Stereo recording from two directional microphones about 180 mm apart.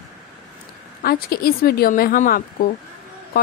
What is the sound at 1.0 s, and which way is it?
A woman's voice, 55° left (ahead or behind).